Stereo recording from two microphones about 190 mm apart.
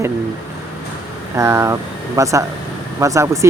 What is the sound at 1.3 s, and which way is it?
Speech, 15° right (ahead or behind).